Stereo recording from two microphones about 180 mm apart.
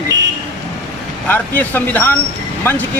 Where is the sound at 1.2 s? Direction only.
10° left (ahead or behind).